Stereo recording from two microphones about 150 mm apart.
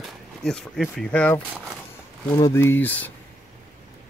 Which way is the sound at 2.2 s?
20° left (ahead or behind).